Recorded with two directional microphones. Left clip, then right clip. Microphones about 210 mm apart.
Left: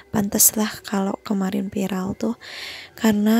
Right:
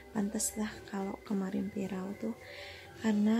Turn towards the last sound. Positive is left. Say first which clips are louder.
# left 12 dB
turn(degrees=50)  # may be behind; listen again after turning